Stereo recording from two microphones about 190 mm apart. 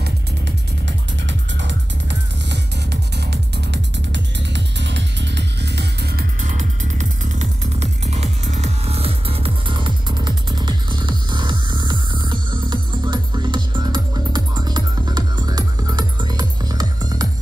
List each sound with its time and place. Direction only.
0.8 s music: 70° right (ahead or behind); by 17.3 s 20° right (ahead or behind)